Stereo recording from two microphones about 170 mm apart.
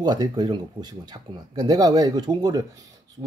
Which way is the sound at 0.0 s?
25° right (ahead or behind).